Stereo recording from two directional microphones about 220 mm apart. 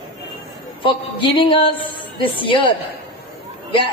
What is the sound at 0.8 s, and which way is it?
A woman's voice, 20° left (ahead or behind).